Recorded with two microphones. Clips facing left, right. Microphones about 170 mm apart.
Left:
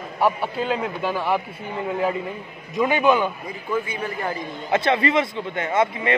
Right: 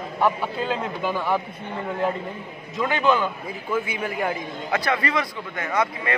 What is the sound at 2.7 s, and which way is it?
Speech, 15° left (ahead or behind).